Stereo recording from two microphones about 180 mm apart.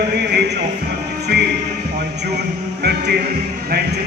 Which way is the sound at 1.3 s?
65° right (ahead or behind).